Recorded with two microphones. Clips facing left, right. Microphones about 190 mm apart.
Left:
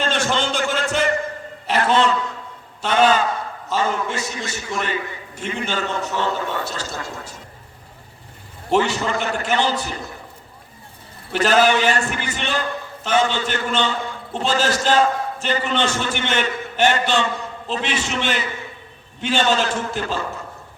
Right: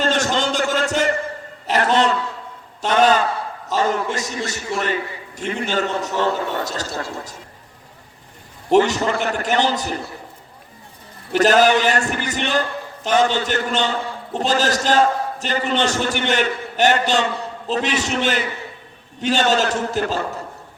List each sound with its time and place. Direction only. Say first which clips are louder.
0.0 s a sound: right 2 dB; 40° right (ahead or behind)
5.4 s a man's voice: right 3 dB; 40° right (ahead or behind)
8.7 s a man's voice: right 4 dB; 40° right (ahead or behind)
11.3 s a man's voice: right 2 dB; 40° right (ahead or behind)